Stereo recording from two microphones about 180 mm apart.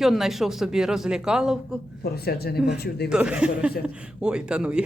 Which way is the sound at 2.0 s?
60° left (ahead or behind).